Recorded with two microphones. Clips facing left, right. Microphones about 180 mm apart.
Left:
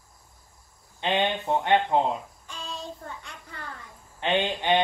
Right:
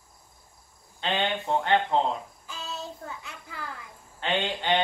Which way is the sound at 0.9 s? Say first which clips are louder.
Left 3 dB; 15° left (ahead or behind).